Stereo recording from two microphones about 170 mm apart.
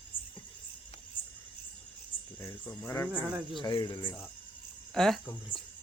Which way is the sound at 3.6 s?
25° left (ahead or behind).